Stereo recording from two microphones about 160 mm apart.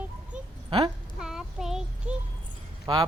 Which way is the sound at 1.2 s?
5° right (ahead or behind).